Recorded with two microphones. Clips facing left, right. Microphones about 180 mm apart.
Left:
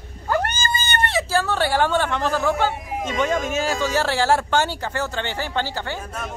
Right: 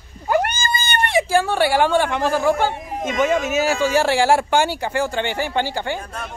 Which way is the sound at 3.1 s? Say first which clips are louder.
Right 4 dB; 5° right (ahead or behind).